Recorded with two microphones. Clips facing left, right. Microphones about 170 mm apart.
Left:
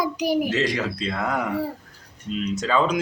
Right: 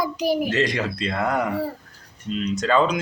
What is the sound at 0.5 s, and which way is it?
A child's voice, 5° left (ahead or behind).